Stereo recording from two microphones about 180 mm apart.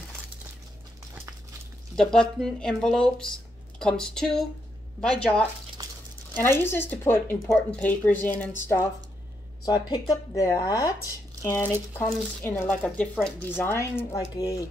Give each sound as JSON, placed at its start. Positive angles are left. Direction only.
{"t": 2.0, "sound": "speech", "side_deg": 5}
{"t": 5.8, "sound": "a sound", "side_deg": -20}
{"t": 6.3, "sound": "speech", "side_deg": 15}
{"t": 9.7, "sound": "speech", "side_deg": 25}